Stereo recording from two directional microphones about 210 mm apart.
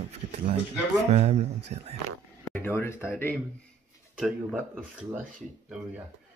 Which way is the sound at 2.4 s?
10° left (ahead or behind).